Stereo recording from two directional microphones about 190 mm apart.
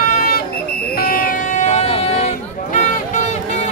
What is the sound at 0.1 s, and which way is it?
Buzzer, 50° left (ahead or behind).